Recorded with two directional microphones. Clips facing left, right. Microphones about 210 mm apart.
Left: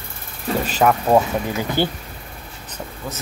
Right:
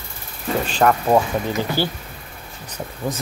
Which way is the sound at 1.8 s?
20° left (ahead or behind).